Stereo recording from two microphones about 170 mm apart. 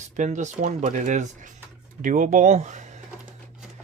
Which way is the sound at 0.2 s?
45° right (ahead or behind).